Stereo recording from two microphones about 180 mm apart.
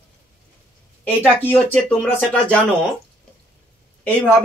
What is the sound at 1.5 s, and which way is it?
Speech, 5° left (ahead or behind).